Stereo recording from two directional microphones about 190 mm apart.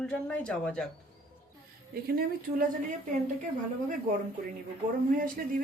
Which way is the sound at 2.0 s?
50° right (ahead or behind).